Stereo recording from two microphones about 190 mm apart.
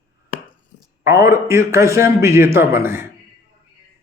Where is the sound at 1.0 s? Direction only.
15° right (ahead or behind).